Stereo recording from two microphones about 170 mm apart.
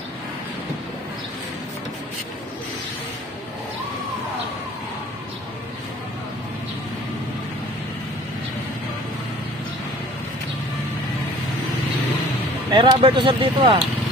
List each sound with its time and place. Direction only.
12.7 s speech: 30° right (ahead or behind)